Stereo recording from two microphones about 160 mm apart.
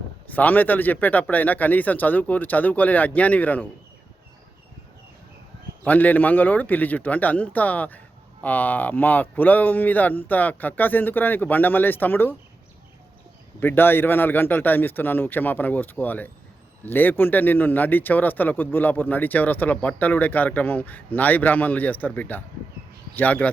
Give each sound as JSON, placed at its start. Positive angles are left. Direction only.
{"t": 0.3, "sound": "a man's voice", "side_deg": 10}
{"t": 5.8, "sound": "a man's voice", "side_deg": 10}
{"t": 13.6, "sound": "a man's voice", "side_deg": 15}